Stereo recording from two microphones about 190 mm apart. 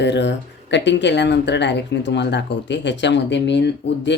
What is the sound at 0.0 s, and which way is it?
Speech, 65° left (ahead or behind).